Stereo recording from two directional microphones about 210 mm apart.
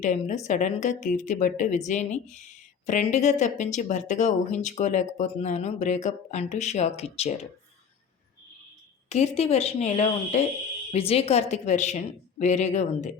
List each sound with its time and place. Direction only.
0.0 s speech: 35° left (ahead or behind)
9.0 s speech: 30° left (ahead or behind)